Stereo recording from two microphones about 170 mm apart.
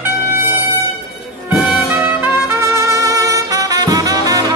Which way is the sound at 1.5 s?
10° right (ahead or behind).